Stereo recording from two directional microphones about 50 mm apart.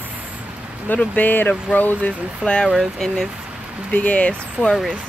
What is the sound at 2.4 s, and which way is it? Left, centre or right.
Speech, centre.